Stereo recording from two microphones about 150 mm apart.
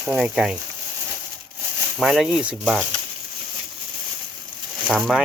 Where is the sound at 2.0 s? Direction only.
Centre (ahead or behind).